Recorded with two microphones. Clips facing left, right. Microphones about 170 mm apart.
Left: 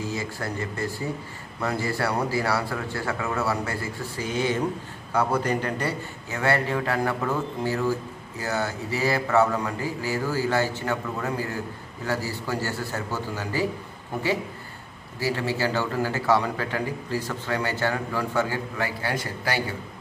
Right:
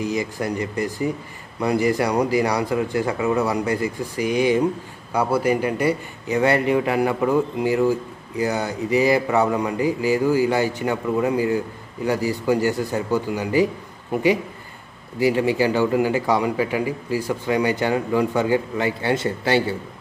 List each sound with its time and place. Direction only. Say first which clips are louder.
0.0 s a man's voice: right 6 dB; 15° right (ahead or behind)
15.1 s a man's voice: right 8 dB; 15° right (ahead or behind)